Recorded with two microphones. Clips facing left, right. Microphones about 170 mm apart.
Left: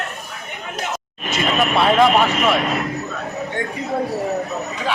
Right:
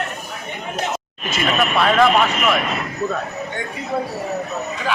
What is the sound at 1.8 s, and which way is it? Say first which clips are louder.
Speech: left 1 dB; 20° left (ahead or behind).